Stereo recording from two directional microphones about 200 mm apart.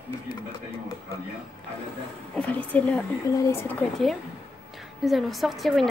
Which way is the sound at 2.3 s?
5° left (ahead or behind).